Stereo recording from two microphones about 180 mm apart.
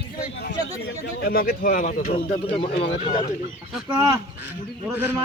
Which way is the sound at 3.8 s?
15° right (ahead or behind).